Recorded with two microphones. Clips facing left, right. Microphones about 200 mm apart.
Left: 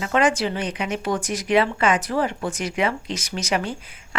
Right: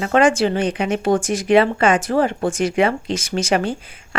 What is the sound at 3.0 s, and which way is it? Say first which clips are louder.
Speech: right 7 dB; 30° right (ahead or behind).